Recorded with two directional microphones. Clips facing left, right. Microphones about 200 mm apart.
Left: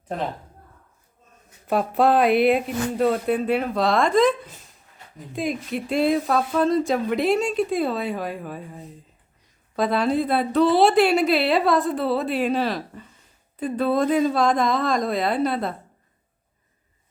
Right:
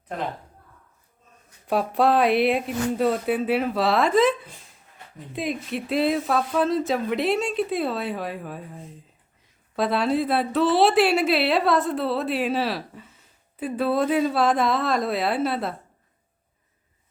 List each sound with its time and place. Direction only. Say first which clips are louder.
1.6 s speech: left 1 dB; centre (ahead or behind)